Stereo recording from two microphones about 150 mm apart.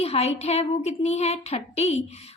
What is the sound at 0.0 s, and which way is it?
A woman's voice, 45° left (ahead or behind).